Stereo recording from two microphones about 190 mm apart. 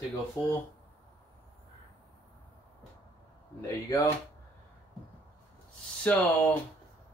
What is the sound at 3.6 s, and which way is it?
Speech, 20° left (ahead or behind).